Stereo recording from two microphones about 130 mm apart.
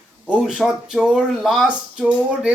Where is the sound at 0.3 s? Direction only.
5° right (ahead or behind).